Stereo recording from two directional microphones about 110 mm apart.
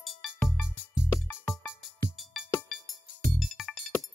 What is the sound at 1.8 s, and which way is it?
Music, centre (ahead or behind).